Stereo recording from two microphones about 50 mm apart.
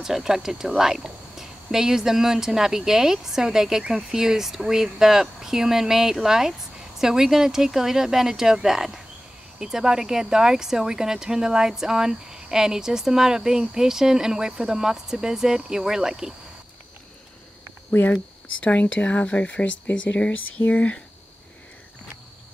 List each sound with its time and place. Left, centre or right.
0.0 s speech: centre
18.0 s speech: left